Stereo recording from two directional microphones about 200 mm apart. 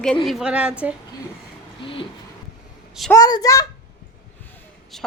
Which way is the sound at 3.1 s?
20° left (ahead or behind).